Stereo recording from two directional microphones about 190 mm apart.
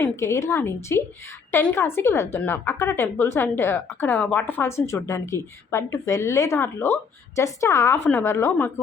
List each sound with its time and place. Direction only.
0.0 s a woman's voice: 15° left (ahead or behind)